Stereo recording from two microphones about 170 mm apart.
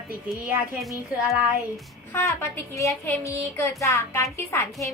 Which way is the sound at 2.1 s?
15° left (ahead or behind).